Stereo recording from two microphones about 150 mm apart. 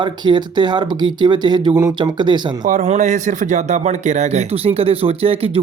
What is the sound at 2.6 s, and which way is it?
A man's voice, 60° right (ahead or behind).